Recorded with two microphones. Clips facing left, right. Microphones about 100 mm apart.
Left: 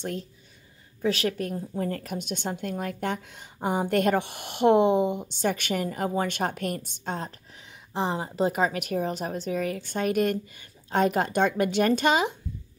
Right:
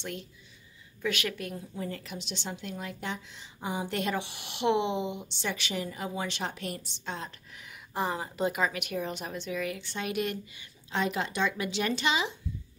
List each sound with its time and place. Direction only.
0.0 s a woman's voice: 40° left (ahead or behind)